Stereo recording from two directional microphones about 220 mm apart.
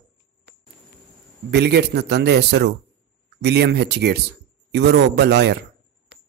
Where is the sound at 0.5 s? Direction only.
50° right (ahead or behind).